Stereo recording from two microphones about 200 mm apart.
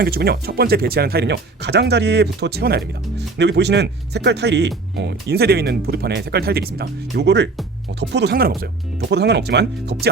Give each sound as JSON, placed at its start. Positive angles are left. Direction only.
{"t": 0.0, "sound": "speech", "side_deg": -50}